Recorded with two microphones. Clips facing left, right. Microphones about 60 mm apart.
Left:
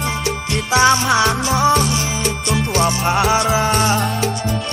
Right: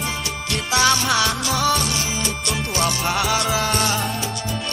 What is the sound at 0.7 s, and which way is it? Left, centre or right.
Music, left.